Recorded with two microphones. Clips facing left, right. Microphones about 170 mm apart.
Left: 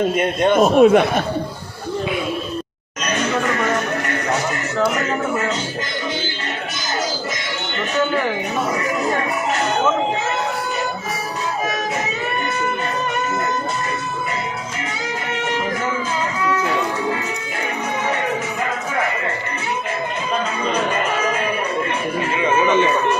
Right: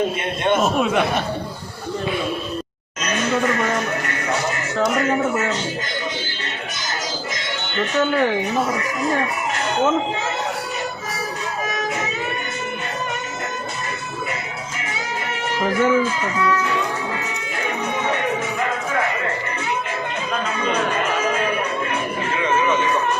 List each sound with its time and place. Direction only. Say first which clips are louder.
0.5 s speech: left 7 dB; 45° left (ahead or behind)